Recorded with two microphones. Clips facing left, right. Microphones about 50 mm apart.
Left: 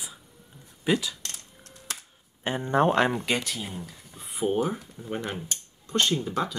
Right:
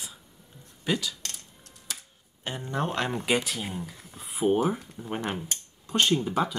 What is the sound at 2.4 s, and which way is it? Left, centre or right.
Speech, left.